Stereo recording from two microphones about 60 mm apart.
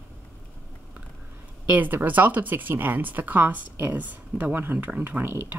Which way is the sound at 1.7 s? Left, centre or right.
Right.